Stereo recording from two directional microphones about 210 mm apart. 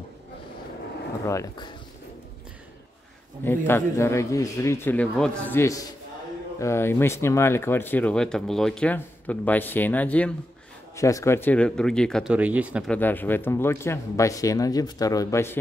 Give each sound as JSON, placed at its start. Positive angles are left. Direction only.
{"t": 1.2, "sound": "speech", "side_deg": 15}
{"t": 3.4, "sound": "speech", "side_deg": 10}
{"t": 12.9, "sound": "speech", "side_deg": 10}